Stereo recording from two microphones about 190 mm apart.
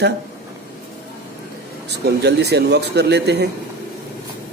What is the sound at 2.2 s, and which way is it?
Speech, 60° right (ahead or behind).